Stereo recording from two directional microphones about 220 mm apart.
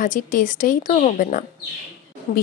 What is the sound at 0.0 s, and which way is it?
Speech, 35° left (ahead or behind).